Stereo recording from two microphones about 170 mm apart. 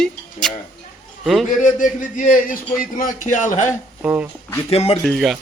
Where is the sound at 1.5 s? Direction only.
50° left (ahead or behind).